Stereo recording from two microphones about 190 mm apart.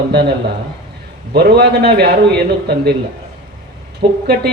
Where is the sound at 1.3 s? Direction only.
60° right (ahead or behind).